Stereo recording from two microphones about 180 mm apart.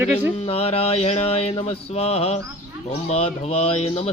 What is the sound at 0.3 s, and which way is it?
Mantra, 35° left (ahead or behind).